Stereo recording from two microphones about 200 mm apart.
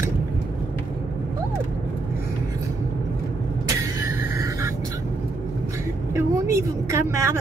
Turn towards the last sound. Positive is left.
turn(degrees=-15)  # may be behind; listen again after turning